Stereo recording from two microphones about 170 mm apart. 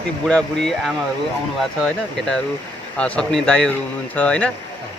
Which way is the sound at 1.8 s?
5° left (ahead or behind).